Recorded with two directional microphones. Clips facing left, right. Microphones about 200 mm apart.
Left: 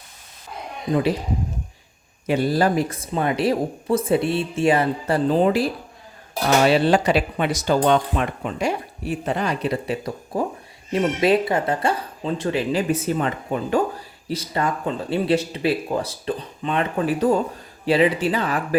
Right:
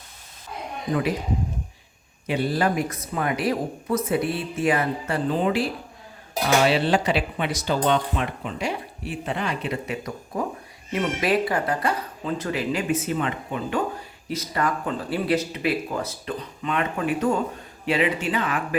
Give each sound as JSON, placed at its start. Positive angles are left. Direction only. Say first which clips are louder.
{"t": 2.2, "sound": "speech", "louder": "left 4 dB", "side_deg": 40}
{"t": 6.7, "sound": "speech", "louder": "left 4 dB", "side_deg": 45}
{"t": 14.3, "sound": "speech", "louder": "left 2 dB", "side_deg": 30}